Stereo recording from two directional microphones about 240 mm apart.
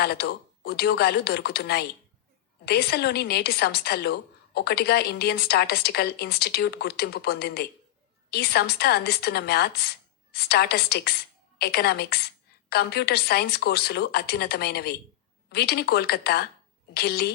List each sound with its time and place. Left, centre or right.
0.0 s a woman's voice: left